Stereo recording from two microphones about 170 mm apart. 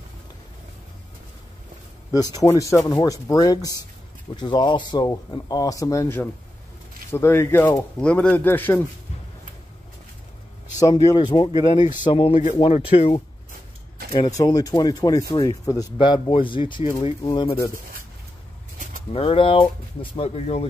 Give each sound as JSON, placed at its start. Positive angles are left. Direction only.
{"t": 2.0, "sound": "speech", "side_deg": 20}
{"t": 10.8, "sound": "speech", "side_deg": 25}
{"t": 14.1, "sound": "speech", "side_deg": 25}
{"t": 19.1, "sound": "speech", "side_deg": 30}